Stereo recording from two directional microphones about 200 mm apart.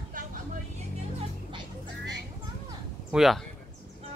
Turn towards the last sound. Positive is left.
turn(degrees=0)  # may be behind; listen again after turning